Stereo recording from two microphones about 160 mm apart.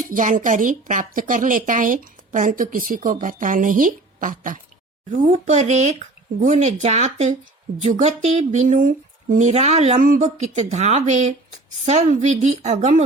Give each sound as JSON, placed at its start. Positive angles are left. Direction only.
{"t": 0.1, "sound": "a woman's voice", "side_deg": -55}
{"t": 9.5, "sound": "speech", "side_deg": -45}